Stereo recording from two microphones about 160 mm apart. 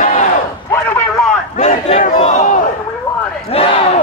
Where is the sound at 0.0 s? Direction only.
50° left (ahead or behind).